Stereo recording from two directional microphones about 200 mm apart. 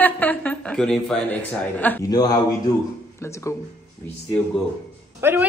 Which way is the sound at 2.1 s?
20° left (ahead or behind).